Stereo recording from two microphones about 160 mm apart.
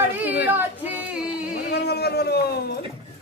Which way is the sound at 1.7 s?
90° left.